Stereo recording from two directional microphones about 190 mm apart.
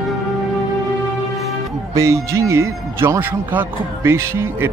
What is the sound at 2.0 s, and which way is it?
Speech, 15° right (ahead or behind).